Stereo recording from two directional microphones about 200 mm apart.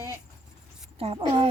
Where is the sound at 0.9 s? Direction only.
30° right (ahead or behind).